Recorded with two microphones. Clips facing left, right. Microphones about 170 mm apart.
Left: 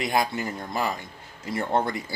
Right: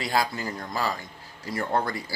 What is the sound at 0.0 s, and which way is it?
Speech, 20° left (ahead or behind).